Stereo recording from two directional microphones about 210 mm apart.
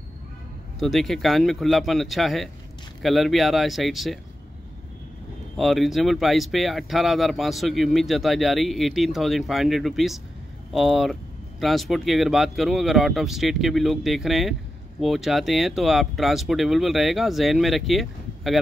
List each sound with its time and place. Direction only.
0.7 s speech: centre (ahead or behind)
5.6 s speech: centre (ahead or behind)